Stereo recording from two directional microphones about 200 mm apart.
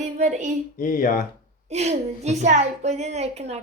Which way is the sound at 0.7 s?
45° left (ahead or behind).